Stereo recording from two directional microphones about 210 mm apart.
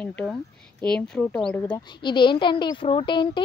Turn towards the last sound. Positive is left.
turn(degrees=25)  # may be behind; listen again after turning